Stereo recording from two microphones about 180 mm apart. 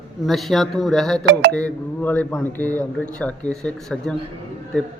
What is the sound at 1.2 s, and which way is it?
Speech, 70° right (ahead or behind).